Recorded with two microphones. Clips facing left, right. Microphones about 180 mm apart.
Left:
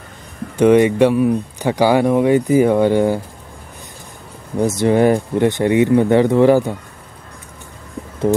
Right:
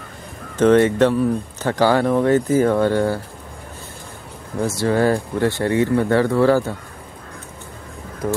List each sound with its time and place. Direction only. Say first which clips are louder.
0.6 s speech: left 2 dB; 15° left (ahead or behind)
4.6 s speech: left 4 dB; 20° left (ahead or behind)